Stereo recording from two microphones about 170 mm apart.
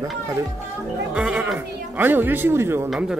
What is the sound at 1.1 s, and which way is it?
Speech, 5° right (ahead or behind).